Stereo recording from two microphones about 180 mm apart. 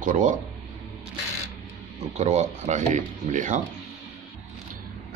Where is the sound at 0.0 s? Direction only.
45° right (ahead or behind).